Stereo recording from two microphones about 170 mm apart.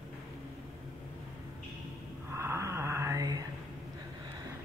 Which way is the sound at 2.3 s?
15° right (ahead or behind).